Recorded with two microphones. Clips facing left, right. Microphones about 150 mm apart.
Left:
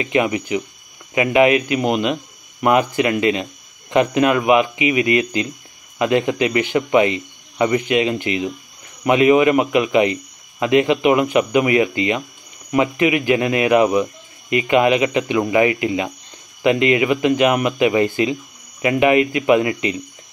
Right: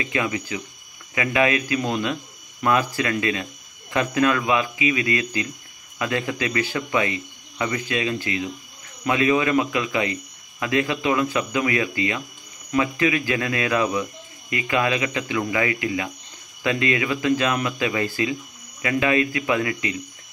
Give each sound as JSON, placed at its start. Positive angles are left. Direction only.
{"t": 0.0, "sound": "speech", "side_deg": 20}